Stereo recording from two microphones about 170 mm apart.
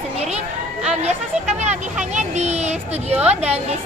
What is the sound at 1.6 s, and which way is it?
Speech, 45° right (ahead or behind).